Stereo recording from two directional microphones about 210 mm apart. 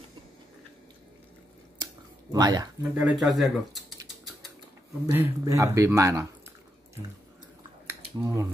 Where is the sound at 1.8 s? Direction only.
20° right (ahead or behind).